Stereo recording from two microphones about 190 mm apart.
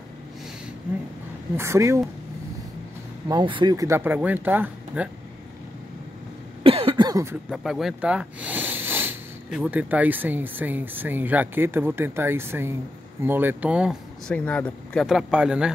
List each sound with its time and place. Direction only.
1.6 s speech: 15° right (ahead or behind)
3.3 s speech: 25° right (ahead or behind); by 5.1 s 10° right (ahead or behind)
6.6 s cough: 30° right (ahead or behind)
7.4 s speech: centre (ahead or behind)
14.3 s speech: 5° left (ahead or behind)